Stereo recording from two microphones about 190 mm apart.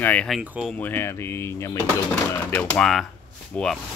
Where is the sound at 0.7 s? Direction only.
10° left (ahead or behind).